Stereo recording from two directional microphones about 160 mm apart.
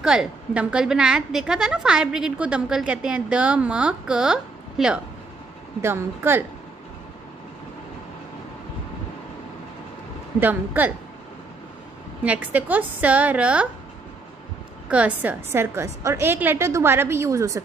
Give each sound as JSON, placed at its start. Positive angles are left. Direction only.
{"t": 0.0, "sound": "a woman's voice", "side_deg": -5}
{"t": 5.8, "sound": "a woman's voice", "side_deg": -15}
{"t": 10.4, "sound": "a woman's voice", "side_deg": -10}
{"t": 12.2, "sound": "a woman's voice", "side_deg": -10}
{"t": 14.9, "sound": "a woman's voice", "side_deg": -10}